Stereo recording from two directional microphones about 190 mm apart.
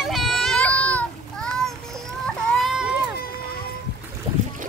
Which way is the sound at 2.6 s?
5° right (ahead or behind).